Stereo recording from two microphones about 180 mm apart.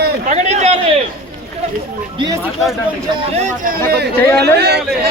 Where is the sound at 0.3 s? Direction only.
40° right (ahead or behind).